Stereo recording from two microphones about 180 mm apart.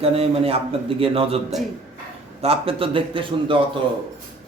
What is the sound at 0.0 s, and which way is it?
A man's voice, 35° right (ahead or behind).